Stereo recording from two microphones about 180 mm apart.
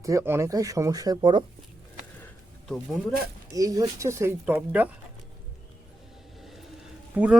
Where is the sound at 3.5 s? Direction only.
20° right (ahead or behind).